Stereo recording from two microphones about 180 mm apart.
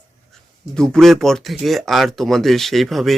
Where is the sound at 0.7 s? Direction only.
5° left (ahead or behind).